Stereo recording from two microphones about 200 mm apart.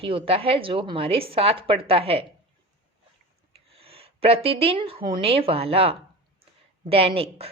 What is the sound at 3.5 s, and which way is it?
A woman's voice, 30° right (ahead or behind).